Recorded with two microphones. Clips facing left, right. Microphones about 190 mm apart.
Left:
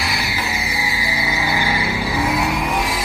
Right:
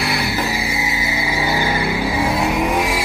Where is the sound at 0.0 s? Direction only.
60° right (ahead or behind).